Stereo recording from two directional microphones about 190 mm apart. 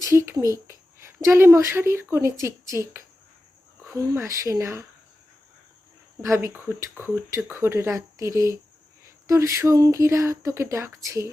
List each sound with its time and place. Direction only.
0.0 s a woman's voice: 15° right (ahead or behind)
6.2 s speech: 15° right (ahead or behind)